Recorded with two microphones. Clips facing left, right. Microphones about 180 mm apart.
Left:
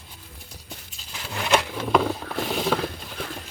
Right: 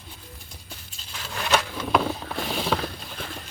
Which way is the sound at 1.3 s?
15° left (ahead or behind).